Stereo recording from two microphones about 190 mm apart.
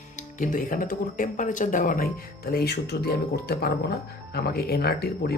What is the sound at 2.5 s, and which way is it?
Speech, 60° left (ahead or behind).